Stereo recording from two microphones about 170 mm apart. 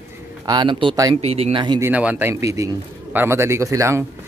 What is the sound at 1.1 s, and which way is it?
Speech, 35° right (ahead or behind).